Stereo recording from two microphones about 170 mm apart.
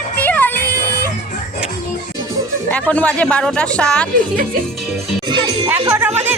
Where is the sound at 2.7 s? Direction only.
10° left (ahead or behind).